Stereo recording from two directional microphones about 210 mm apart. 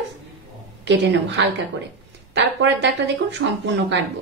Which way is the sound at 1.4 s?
55° right (ahead or behind).